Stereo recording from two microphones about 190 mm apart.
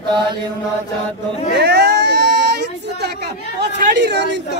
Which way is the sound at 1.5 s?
60° right (ahead or behind).